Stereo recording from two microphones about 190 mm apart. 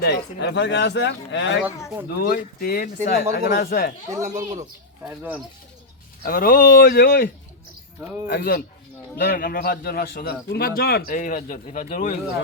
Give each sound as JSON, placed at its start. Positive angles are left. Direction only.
{"t": 0.0, "sound": "speech", "side_deg": 60}
{"t": 2.0, "sound": "speech", "side_deg": 55}
{"t": 4.2, "sound": "speech", "side_deg": -40}
{"t": 5.0, "sound": "speech", "side_deg": -5}
{"t": 6.2, "sound": "speech", "side_deg": 50}
{"t": 8.3, "sound": "speech", "side_deg": 55}